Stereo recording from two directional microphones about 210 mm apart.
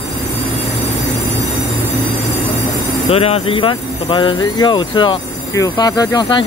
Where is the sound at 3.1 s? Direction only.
30° left (ahead or behind).